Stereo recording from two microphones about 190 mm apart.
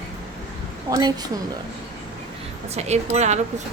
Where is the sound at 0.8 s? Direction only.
20° right (ahead or behind).